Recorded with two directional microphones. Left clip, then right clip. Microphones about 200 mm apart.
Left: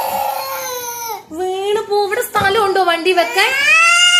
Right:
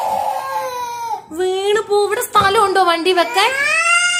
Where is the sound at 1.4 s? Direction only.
20° right (ahead or behind).